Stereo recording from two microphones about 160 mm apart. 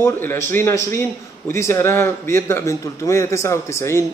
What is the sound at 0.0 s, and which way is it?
A man's voice, 15° left (ahead or behind).